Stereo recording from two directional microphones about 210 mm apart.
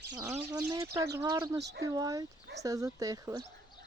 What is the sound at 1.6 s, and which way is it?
Speech, 55° right (ahead or behind).